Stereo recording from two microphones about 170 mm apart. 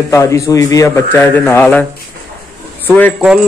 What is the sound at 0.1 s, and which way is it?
A man's voice, 15° left (ahead or behind).